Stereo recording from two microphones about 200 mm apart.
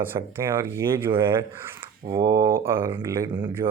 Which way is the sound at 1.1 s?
25° right (ahead or behind).